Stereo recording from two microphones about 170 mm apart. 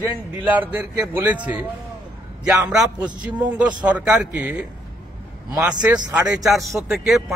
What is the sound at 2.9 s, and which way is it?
Speech, 25° right (ahead or behind).